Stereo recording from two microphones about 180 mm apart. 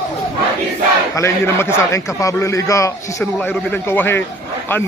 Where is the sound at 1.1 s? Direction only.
15° left (ahead or behind).